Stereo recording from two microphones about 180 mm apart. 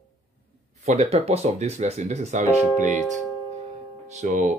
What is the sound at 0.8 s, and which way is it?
Speech, 35° right (ahead or behind).